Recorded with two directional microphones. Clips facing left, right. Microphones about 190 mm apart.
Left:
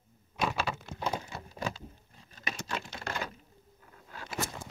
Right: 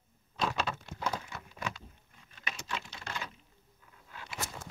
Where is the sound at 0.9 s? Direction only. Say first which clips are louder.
Left 2 dB; 25° left (ahead or behind).